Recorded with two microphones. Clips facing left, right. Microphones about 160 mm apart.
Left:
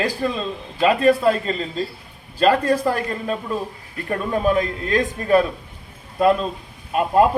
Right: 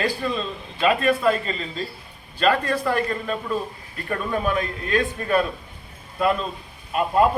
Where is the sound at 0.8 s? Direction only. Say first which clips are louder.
Left 4 dB; 35° left (ahead or behind).